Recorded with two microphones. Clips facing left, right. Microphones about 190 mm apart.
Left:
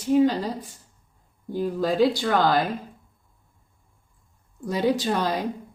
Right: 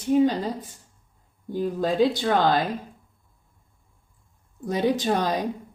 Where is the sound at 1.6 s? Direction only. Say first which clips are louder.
Even; 20° right (ahead or behind).